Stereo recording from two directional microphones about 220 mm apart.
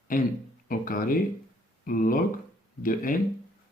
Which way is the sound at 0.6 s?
40° left (ahead or behind).